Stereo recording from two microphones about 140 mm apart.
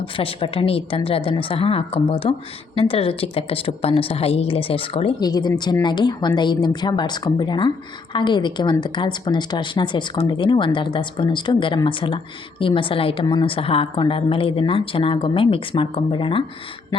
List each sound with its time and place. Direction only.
0.2 s a woman's voice: 40° left (ahead or behind)
5.2 s a woman's voice: 30° left (ahead or behind)